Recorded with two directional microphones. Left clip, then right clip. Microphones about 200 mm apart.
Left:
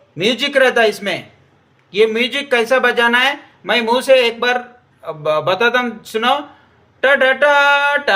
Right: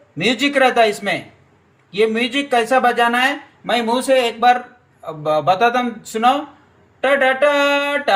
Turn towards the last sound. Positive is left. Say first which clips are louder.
# left 4 dB
turn(degrees=60)  # may be behind; listen again after turning